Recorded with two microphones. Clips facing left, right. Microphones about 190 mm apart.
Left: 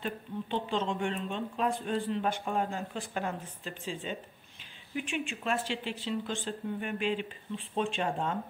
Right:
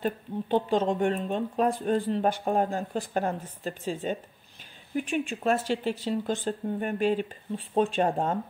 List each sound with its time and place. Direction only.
0.0 s speech: 45° right (ahead or behind)